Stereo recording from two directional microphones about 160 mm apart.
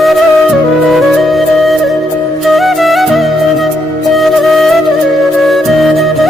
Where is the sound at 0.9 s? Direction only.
Centre (ahead or behind).